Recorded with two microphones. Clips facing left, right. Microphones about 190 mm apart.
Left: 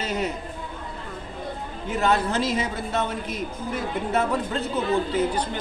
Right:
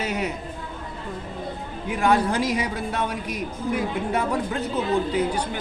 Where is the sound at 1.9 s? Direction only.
10° right (ahead or behind).